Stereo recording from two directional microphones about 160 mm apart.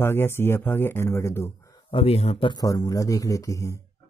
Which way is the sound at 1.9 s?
35° left (ahead or behind).